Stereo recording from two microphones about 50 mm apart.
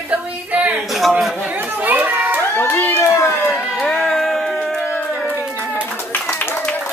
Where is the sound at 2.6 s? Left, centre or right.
Left.